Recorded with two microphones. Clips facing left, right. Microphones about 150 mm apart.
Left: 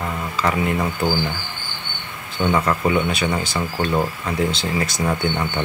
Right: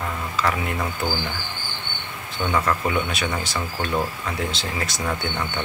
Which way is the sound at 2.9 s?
Centre (ahead or behind).